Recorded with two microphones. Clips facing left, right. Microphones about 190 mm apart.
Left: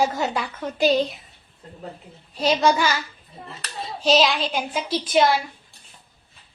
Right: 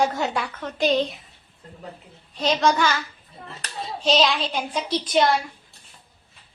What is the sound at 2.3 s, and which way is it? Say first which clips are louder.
Speech: left 2 dB; 10° left (ahead or behind).